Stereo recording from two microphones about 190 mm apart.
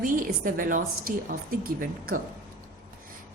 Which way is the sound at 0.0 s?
45° right (ahead or behind).